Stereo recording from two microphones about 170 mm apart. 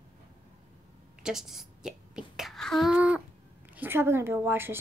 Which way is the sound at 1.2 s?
Centre (ahead or behind).